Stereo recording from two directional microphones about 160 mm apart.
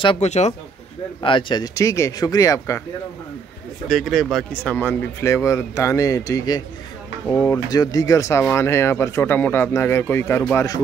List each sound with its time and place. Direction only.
0.0 s speech: 30° left (ahead or behind)
0.3 s speech: 45° left (ahead or behind)
1.2 s speech: 30° left (ahead or behind)
3.9 s speech: centre (ahead or behind); by 6.6 s 20° left (ahead or behind)
7.2 s speech: 10° left (ahead or behind)
7.7 s speech: 20° left (ahead or behind)